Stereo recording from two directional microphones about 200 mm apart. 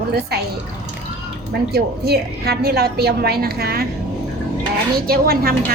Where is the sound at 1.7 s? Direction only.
55° right (ahead or behind).